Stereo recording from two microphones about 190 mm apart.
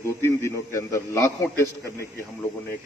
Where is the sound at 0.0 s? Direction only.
15° left (ahead or behind).